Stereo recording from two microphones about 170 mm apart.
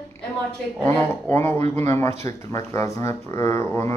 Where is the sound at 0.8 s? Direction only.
10° left (ahead or behind).